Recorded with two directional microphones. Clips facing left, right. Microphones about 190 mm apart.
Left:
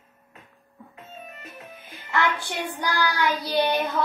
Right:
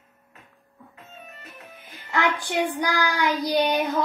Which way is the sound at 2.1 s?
15° right (ahead or behind).